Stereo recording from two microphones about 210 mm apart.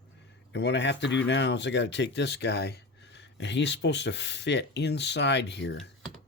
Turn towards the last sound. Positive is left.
turn(degrees=55)  # may be behind; listen again after turning